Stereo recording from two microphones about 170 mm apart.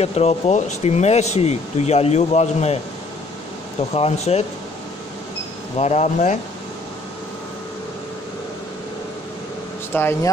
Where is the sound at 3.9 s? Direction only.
35° left (ahead or behind).